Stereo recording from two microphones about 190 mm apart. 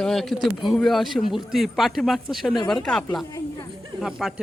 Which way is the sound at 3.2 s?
20° left (ahead or behind).